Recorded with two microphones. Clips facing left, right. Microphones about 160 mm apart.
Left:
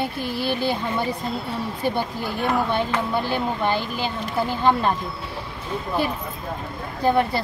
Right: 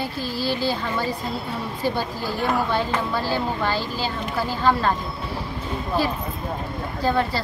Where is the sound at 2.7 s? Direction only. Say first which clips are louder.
Even; 20° left (ahead or behind).